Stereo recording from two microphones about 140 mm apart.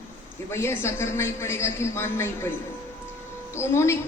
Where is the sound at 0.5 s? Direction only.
20° left (ahead or behind).